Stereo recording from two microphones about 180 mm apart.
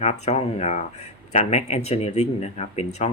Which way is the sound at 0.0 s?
40° left (ahead or behind).